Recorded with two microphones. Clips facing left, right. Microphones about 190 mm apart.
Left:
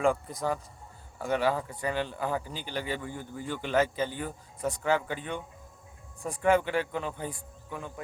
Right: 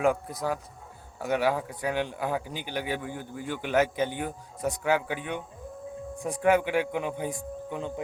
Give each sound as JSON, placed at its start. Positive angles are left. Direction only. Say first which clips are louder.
{"t": 0.0, "sound": "speech", "louder": "right 1 dB", "side_deg": -5}
{"t": 6.4, "sound": "speech", "louder": "right 2 dB", "side_deg": -10}